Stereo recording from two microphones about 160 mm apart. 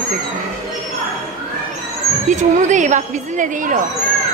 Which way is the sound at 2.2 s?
50° right (ahead or behind).